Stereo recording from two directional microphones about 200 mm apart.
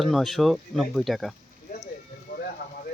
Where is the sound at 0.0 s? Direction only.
Centre (ahead or behind).